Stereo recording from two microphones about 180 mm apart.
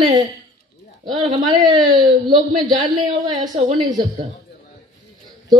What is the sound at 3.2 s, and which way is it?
Speech, 20° right (ahead or behind).